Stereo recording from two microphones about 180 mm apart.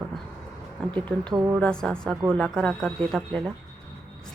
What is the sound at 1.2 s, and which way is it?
Speech, 20° right (ahead or behind).